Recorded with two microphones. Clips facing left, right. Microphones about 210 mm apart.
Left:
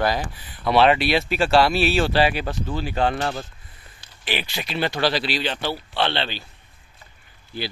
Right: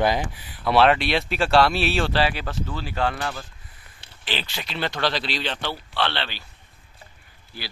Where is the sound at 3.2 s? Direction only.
30° left (ahead or behind).